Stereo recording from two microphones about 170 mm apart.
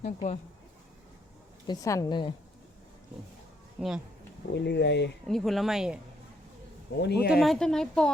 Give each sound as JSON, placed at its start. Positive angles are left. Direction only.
{"t": 0.0, "sound": "speech", "side_deg": 40}
{"t": 1.6, "sound": "a woman's voice", "side_deg": 20}
{"t": 3.8, "sound": "speech", "side_deg": -5}
{"t": 4.5, "sound": "speech", "side_deg": 85}
{"t": 5.3, "sound": "speech", "side_deg": 0}
{"t": 7.0, "sound": "speech", "side_deg": 75}
{"t": 7.3, "sound": "speech", "side_deg": 0}